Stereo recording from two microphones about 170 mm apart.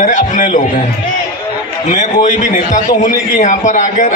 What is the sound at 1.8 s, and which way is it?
A man's voice, 45° left (ahead or behind).